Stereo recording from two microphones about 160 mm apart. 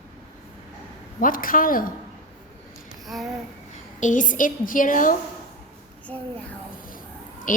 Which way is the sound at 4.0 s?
55° left (ahead or behind).